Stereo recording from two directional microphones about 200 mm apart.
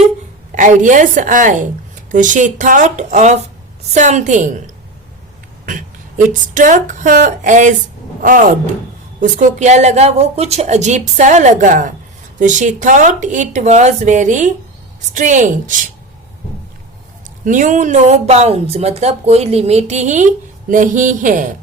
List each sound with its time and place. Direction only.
0.5 s speech: 40° right (ahead or behind)
17.4 s speech: 40° right (ahead or behind)